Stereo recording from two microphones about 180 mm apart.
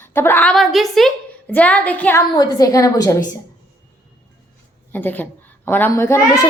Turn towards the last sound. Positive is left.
turn(degrees=15)  # may be behind; listen again after turning